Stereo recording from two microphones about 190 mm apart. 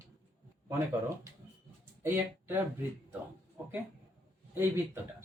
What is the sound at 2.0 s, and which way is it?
Speech, 10° right (ahead or behind).